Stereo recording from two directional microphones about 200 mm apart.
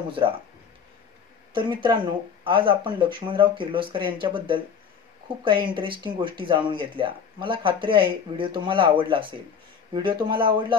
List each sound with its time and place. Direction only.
1.5 s speech: 25° right (ahead or behind)